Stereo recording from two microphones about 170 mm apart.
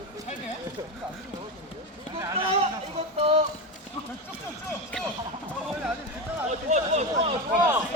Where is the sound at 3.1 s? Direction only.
35° right (ahead or behind).